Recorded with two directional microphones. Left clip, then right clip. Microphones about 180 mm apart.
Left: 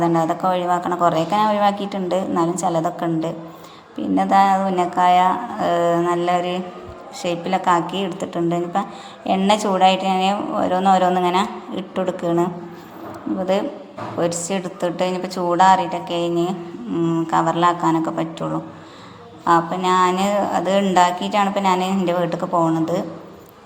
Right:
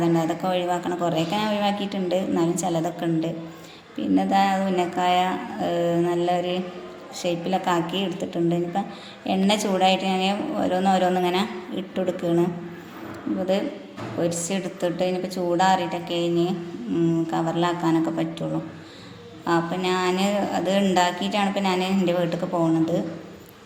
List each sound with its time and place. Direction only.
0.0 s a woman's voice: centre (ahead or behind)
14.2 s a woman's voice: centre (ahead or behind)
19.5 s a woman's voice: centre (ahead or behind)